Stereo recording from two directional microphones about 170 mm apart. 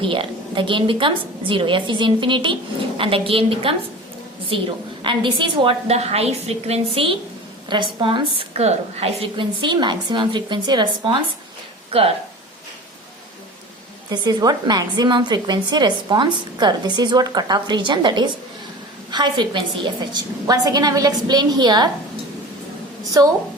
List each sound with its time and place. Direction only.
0.0 s a woman's voice: 30° right (ahead or behind)
5.0 s a woman's voice: 30° right (ahead or behind)
14.1 s a woman's voice: 25° right (ahead or behind)
23.2 s a woman's voice: 20° right (ahead or behind)